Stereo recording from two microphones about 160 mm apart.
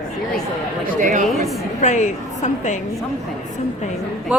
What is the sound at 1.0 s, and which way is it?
Speech, 50° right (ahead or behind).